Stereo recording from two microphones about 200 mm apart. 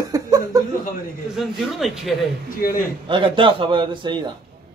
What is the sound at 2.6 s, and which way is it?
Speech, 45° left (ahead or behind).